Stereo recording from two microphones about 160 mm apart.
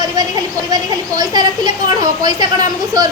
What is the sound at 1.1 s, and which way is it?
Speech, 25° right (ahead or behind).